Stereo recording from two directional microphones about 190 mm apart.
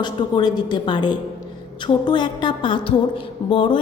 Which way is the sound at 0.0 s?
25° left (ahead or behind).